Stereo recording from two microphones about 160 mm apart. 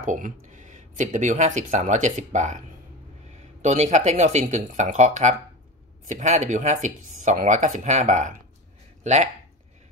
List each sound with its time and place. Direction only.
0.0 s speech: 55° right (ahead or behind)